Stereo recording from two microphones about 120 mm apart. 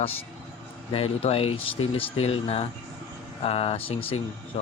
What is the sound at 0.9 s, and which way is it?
Speech, 50° left (ahead or behind).